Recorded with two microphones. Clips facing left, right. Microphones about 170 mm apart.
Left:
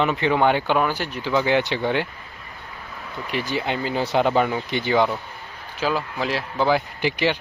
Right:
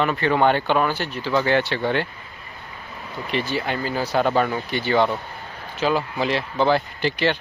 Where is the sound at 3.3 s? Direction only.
15° left (ahead or behind).